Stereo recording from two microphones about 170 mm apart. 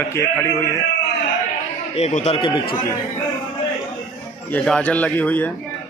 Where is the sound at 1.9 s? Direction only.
40° left (ahead or behind).